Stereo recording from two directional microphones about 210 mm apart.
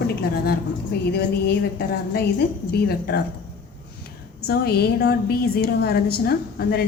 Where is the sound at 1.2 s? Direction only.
50° left (ahead or behind).